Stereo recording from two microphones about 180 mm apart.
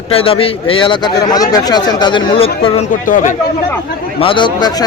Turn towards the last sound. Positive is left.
turn(degrees=25)  # may be behind; listen again after turning